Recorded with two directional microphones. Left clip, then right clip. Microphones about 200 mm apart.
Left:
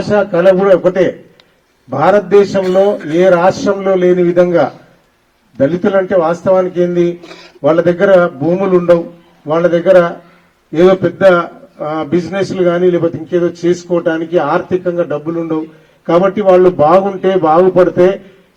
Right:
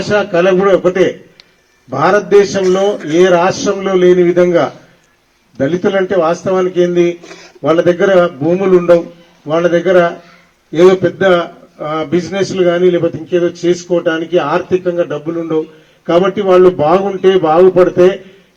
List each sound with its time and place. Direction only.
0.1 s a man's voice: 50° left (ahead or behind)